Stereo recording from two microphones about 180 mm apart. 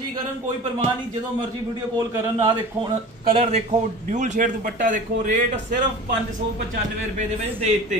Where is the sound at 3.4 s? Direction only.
35° right (ahead or behind).